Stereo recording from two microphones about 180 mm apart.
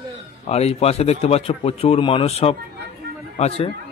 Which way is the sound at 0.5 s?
35° left (ahead or behind).